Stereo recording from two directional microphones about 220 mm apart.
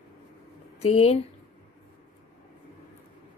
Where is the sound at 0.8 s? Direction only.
30° left (ahead or behind).